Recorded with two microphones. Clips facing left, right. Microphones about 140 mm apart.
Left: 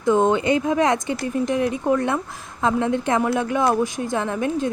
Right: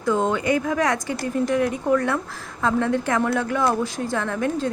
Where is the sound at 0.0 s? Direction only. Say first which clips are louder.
Left 4 dB; 20° left (ahead or behind).